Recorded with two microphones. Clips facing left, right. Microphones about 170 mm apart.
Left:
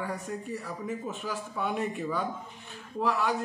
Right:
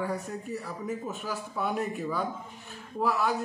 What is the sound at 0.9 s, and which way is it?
A man's voice, 5° right (ahead or behind).